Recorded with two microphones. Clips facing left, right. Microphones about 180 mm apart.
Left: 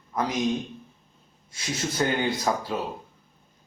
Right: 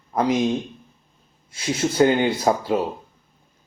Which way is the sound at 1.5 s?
30° right (ahead or behind).